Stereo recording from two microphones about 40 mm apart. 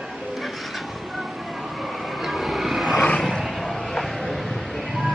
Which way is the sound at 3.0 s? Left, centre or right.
Left.